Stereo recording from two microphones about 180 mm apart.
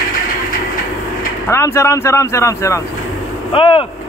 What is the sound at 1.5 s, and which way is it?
Speech, 15° left (ahead or behind).